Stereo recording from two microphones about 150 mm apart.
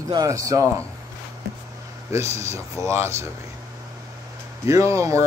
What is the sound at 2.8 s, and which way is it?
Speech, 20° right (ahead or behind).